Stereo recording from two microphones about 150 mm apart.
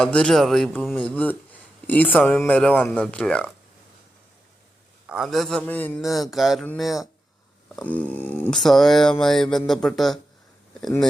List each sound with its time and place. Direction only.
0.0 s speech: 5° left (ahead or behind)
5.0 s a man's voice: 5° right (ahead or behind)
6.0 s a man's voice: centre (ahead or behind)
7.8 s speech: 10° left (ahead or behind)
8.5 s a man's voice: centre (ahead or behind)